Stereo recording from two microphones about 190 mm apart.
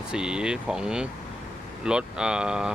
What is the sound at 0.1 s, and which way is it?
Speech, 5° right (ahead or behind).